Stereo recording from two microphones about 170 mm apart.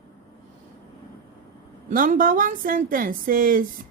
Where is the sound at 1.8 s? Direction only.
50° right (ahead or behind).